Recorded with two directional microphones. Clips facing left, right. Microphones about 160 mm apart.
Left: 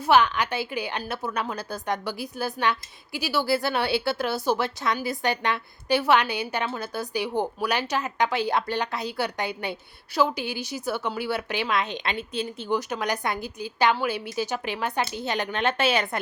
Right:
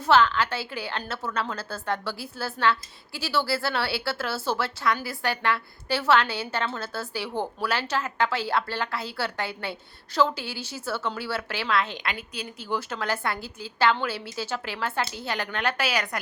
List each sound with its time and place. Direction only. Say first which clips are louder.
0.0 s a woman's voice: even; 15° left (ahead or behind)